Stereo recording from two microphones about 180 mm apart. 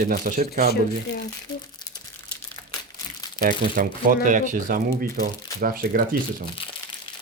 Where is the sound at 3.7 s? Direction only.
50° right (ahead or behind).